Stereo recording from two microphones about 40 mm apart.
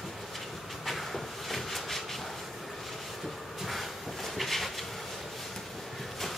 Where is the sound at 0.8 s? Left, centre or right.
Centre.